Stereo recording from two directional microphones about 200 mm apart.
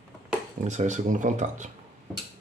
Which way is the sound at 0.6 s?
35° right (ahead or behind).